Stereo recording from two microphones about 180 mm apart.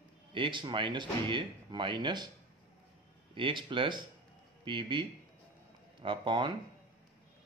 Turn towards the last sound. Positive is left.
turn(degrees=-25)  # may be behind; listen again after turning